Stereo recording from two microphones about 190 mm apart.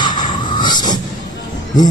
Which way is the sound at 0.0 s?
25° left (ahead or behind).